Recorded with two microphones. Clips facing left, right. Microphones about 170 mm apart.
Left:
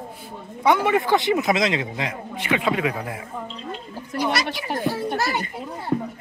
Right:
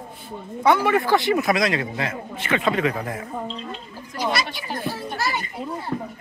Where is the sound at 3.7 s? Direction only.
65° left (ahead or behind).